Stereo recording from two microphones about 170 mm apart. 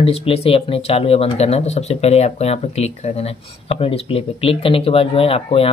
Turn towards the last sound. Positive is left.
turn(degrees=35)  # may be behind; listen again after turning